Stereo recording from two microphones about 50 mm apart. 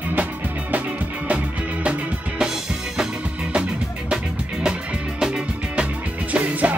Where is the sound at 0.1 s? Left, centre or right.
Right.